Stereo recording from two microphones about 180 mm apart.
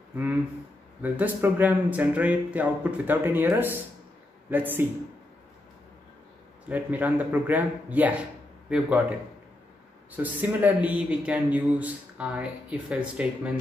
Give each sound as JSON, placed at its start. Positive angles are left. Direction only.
{"t": 0.1, "sound": "speech", "side_deg": -10}
{"t": 6.7, "sound": "speech", "side_deg": -10}
{"t": 10.1, "sound": "speech", "side_deg": -10}